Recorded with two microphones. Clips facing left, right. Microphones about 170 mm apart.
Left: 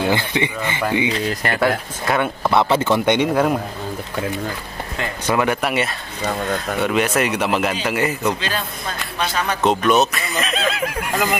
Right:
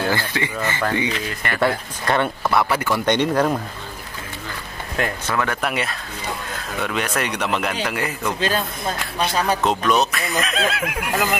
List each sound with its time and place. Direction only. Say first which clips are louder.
0.0 s speech: left 3 dB; 20° left (ahead or behind)
1.1 s speech: left 5 dB; 35° left (ahead or behind)
2.0 s speech: left 1 dB; 5° left (ahead or behind)
2.5 s speech: left 5 dB; 25° left (ahead or behind)
3.1 s speech: even; 5° left (ahead or behind)
5.2 s speech: left 5 dB; 15° left (ahead or behind)
5.6 s speech: left 3 dB; 5° left (ahead or behind)
9.6 s speech: left 7 dB; centre (ahead or behind)